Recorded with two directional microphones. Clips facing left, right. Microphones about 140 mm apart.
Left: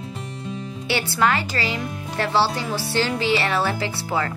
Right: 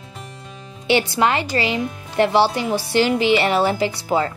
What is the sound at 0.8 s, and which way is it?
Speech, 20° right (ahead or behind).